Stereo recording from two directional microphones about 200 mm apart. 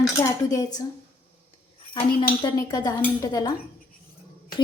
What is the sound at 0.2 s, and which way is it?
Speech, 15° left (ahead or behind).